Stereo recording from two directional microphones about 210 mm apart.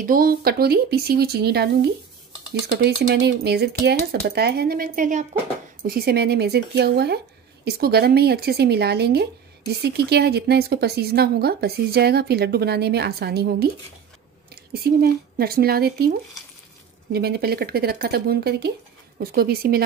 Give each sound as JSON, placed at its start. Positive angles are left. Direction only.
{"t": 0.0, "sound": "speech", "side_deg": -45}
{"t": 17.1, "sound": "speech", "side_deg": -50}